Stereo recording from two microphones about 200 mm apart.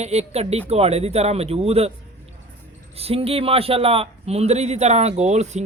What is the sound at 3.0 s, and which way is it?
A man's voice, 30° right (ahead or behind).